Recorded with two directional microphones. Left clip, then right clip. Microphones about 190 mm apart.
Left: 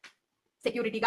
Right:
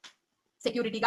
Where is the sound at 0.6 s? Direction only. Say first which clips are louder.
Even; 10° right (ahead or behind).